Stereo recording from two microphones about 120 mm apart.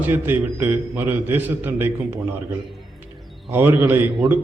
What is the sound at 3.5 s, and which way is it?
Speech, 15° right (ahead or behind).